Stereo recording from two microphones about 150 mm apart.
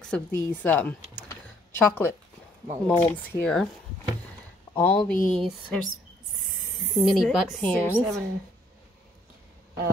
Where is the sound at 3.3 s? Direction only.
5° left (ahead or behind).